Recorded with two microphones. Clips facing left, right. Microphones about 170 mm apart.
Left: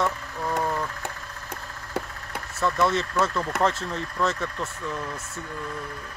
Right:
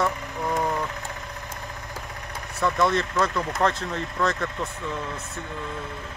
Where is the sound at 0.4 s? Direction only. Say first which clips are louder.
Right 1 dB; 15° right (ahead or behind).